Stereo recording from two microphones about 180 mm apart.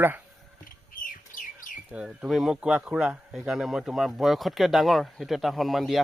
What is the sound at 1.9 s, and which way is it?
Speech, 5° right (ahead or behind).